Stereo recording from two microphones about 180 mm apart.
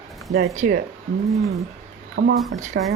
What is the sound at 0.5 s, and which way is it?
Speech, 45° right (ahead or behind).